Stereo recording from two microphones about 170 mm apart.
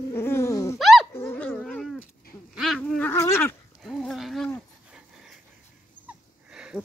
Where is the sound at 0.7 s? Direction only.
Centre (ahead or behind).